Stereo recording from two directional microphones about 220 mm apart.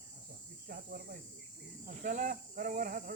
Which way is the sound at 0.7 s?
40° right (ahead or behind).